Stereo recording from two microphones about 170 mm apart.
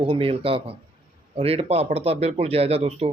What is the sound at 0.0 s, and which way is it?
Speech, 35° right (ahead or behind).